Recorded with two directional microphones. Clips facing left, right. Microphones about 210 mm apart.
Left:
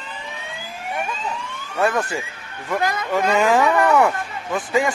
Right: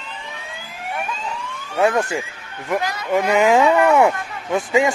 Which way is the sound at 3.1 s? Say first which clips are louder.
Right 3 dB; 20° right (ahead or behind).